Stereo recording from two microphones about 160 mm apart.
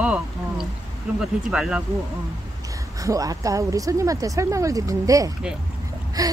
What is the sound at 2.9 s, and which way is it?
Speech, 20° right (ahead or behind).